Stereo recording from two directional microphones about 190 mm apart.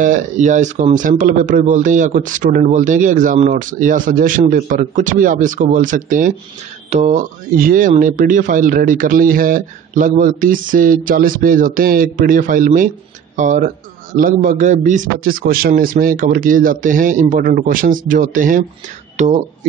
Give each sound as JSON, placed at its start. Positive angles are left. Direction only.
{"t": 0.0, "sound": "speech", "side_deg": -40}